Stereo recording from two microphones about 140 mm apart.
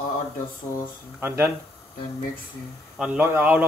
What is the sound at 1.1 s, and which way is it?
Speech, 15° right (ahead or behind).